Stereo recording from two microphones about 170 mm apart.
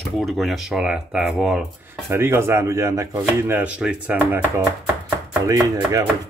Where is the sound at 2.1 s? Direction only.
15° right (ahead or behind).